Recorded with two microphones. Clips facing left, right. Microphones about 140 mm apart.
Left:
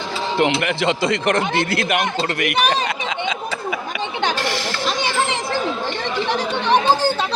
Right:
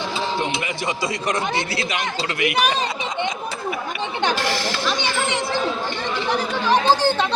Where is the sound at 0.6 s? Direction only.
70° left (ahead or behind); by 2.7 s 50° left (ahead or behind).